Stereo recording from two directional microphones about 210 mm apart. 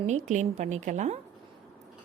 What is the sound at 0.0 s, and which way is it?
A woman's voice, 35° right (ahead or behind).